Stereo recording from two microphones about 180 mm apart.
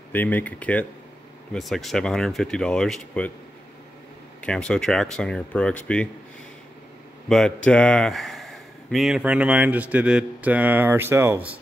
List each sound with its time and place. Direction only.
0.1 s speech: 10° left (ahead or behind)
4.4 s speech: 5° left (ahead or behind)
7.2 s speech: 5° left (ahead or behind); by 11.5 s 15° right (ahead or behind)